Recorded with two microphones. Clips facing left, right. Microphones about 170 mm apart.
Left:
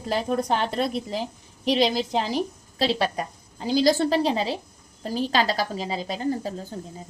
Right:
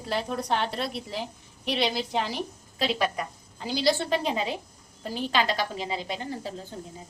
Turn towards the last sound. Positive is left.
turn(degrees=40)  # may be behind; listen again after turning